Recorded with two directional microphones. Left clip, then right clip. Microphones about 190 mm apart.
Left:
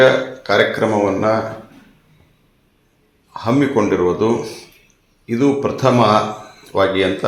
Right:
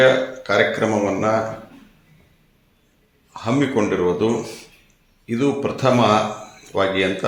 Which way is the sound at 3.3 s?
5° right (ahead or behind).